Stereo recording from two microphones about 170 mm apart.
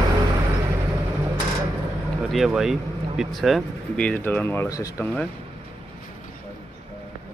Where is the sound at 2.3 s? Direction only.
Centre (ahead or behind); by 5.1 s 15° left (ahead or behind).